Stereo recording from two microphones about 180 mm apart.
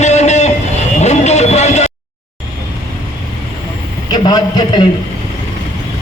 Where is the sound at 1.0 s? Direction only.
40° left (ahead or behind).